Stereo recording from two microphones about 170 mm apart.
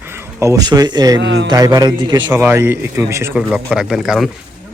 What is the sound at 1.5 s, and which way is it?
Speech, 20° right (ahead or behind).